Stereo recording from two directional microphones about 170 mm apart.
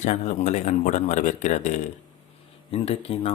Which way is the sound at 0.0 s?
45° left (ahead or behind).